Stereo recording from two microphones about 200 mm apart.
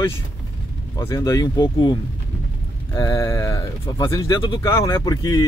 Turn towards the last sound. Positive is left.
turn(degrees=15)  # may be behind; listen again after turning